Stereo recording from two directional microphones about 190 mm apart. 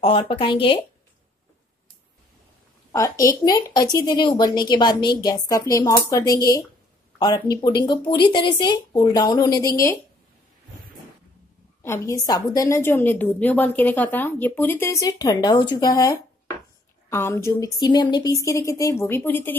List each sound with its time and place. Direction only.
0.0 s speech: 30° left (ahead or behind)
2.9 s speech: 15° left (ahead or behind)
11.8 s speech: 15° left (ahead or behind)